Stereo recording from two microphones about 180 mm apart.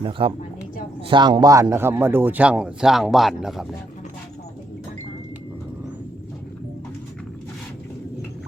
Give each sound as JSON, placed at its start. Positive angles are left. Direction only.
{"t": 0.0, "sound": "speech", "side_deg": -30}